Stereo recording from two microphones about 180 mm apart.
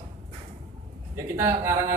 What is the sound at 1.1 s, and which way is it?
Speech, 15° right (ahead or behind).